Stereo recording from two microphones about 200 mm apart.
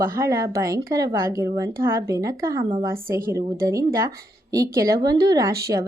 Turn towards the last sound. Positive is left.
turn(degrees=-15)  # may be behind; listen again after turning